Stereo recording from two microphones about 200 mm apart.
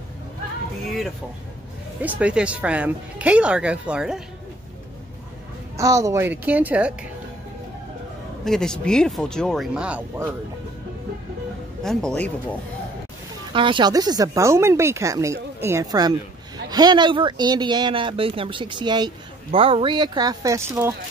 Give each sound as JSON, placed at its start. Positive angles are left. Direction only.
{"t": 2.0, "sound": "speech", "side_deg": -5}
{"t": 5.8, "sound": "speech", "side_deg": -15}
{"t": 8.5, "sound": "speech", "side_deg": 5}
{"t": 11.8, "sound": "speech", "side_deg": 5}
{"t": 13.5, "sound": "speech", "side_deg": -25}